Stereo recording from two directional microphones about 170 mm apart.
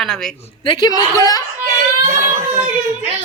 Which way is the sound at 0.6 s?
25° left (ahead or behind).